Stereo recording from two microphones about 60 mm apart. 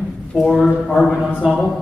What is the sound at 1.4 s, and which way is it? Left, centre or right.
Speech, centre.